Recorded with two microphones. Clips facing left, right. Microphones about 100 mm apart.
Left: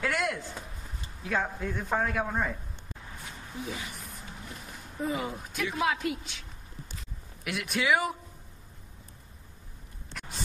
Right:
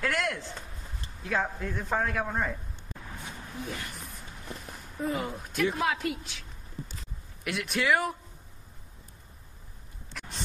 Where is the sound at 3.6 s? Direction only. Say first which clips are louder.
Left 1 dB; centre (ahead or behind).